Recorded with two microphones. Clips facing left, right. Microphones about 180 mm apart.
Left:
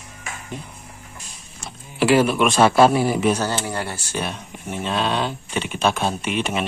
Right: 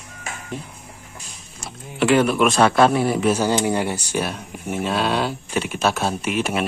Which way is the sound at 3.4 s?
15° right (ahead or behind).